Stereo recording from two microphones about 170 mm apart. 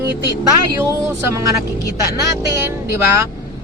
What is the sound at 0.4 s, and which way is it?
Speech, 20° right (ahead or behind).